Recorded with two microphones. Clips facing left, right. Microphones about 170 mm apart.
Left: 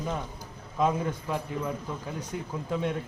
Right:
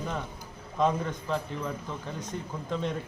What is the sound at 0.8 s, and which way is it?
A man's voice, 5° left (ahead or behind).